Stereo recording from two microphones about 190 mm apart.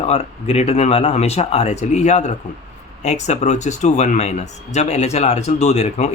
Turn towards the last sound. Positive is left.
turn(degrees=35)  # may be behind; listen again after turning